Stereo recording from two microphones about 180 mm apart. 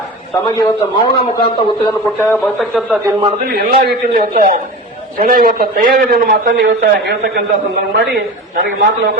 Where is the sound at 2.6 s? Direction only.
Centre (ahead or behind).